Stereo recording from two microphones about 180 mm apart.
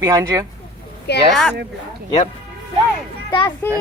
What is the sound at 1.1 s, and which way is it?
Speech, 65° left (ahead or behind).